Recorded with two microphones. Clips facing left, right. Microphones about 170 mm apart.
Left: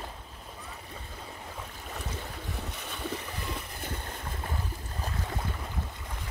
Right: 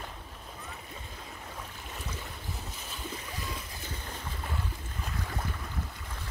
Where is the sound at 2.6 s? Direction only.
65° left (ahead or behind).